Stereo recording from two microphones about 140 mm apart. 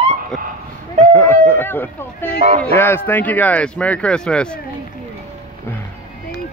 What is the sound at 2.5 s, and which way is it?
Speech, 15° left (ahead or behind).